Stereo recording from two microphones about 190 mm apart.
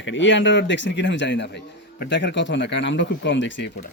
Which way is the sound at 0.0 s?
80° left.